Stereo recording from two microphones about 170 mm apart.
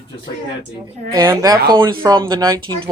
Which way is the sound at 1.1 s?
20° right (ahead or behind).